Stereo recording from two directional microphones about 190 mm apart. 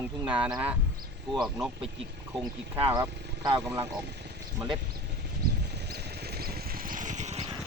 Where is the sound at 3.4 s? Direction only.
15° right (ahead or behind).